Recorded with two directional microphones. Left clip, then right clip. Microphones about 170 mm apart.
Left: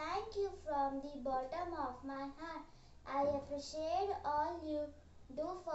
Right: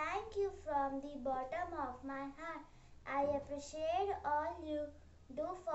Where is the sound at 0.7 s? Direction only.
25° right (ahead or behind).